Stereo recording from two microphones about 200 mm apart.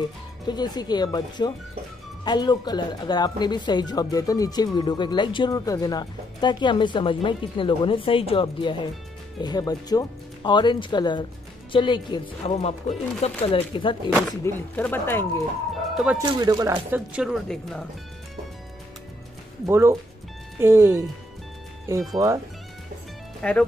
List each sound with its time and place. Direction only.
0.5 s speech: 20° left (ahead or behind)
14.4 s speech: 10° left (ahead or behind)
15.9 s speech: 5° right (ahead or behind)
16.2 s speech: 20° right (ahead or behind); by 17.8 s centre (ahead or behind)
19.6 s speech: 15° right (ahead or behind)
22.2 s speech: 20° right (ahead or behind)
23.4 s speech: 5° left (ahead or behind)